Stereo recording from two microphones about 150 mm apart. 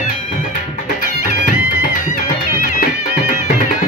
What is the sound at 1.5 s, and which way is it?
Music, 55° left (ahead or behind).